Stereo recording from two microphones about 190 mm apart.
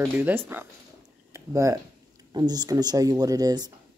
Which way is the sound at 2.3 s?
20° right (ahead or behind).